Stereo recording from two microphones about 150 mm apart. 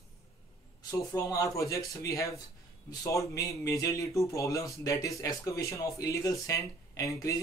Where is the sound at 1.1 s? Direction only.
20° left (ahead or behind).